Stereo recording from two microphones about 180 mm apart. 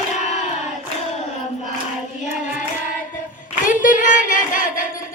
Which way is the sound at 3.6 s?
45° left (ahead or behind).